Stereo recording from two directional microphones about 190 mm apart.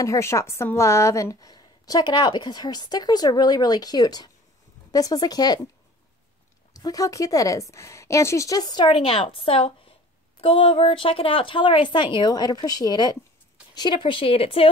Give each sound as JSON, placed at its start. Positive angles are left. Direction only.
{"t": 0.0, "sound": "a woman's voice", "side_deg": 15}
{"t": 6.7, "sound": "a woman's voice", "side_deg": 20}